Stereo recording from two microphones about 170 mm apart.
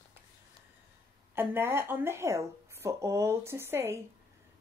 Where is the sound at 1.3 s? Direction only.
15° right (ahead or behind).